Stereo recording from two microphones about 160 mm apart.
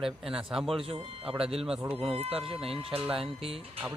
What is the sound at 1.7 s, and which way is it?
Speech, 5° right (ahead or behind).